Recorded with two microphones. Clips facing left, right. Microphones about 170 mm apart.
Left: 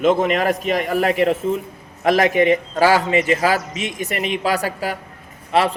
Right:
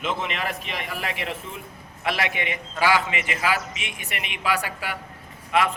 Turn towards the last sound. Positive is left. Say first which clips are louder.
# left 5 dB
turn(degrees=35)  # may be behind; listen again after turning